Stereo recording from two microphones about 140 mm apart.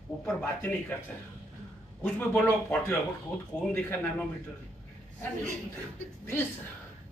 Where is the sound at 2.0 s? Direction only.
15° left (ahead or behind).